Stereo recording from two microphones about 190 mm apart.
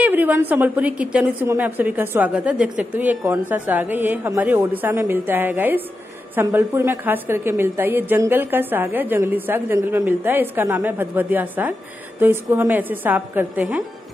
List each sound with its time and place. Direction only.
0.0 s a woman's voice: 10° right (ahead or behind)